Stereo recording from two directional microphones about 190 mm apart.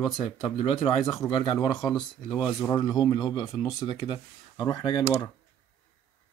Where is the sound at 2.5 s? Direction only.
20° left (ahead or behind).